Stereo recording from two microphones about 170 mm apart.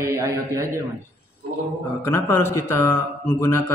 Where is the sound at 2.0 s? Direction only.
15° left (ahead or behind).